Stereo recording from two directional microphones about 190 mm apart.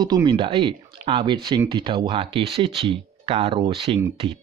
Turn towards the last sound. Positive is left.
turn(degrees=-25)  # may be behind; listen again after turning